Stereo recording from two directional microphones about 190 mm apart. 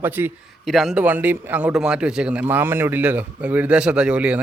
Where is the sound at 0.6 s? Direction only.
Centre (ahead or behind).